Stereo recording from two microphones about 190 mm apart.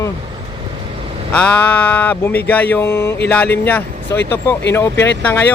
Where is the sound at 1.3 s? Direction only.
5° left (ahead or behind).